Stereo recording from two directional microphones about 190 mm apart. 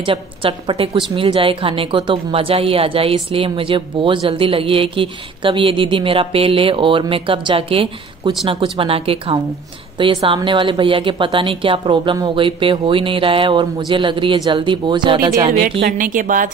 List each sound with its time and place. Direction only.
0.0 s a woman's voice: 30° right (ahead or behind)
15.8 s a woman's voice: 45° right (ahead or behind)